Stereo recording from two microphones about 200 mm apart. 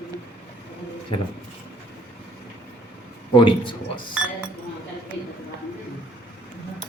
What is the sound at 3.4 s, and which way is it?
Speech, 25° left (ahead or behind).